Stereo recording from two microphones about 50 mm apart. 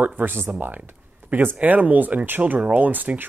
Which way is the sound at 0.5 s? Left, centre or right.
Right.